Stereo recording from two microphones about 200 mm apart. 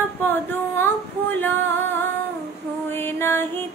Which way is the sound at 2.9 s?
10° left (ahead or behind).